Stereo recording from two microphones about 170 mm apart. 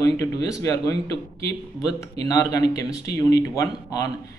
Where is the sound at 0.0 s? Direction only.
20° left (ahead or behind).